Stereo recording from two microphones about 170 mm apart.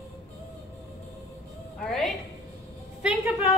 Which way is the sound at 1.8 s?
Centre (ahead or behind).